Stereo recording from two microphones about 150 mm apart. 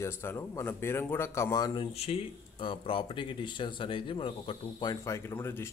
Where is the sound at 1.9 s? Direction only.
40° left (ahead or behind).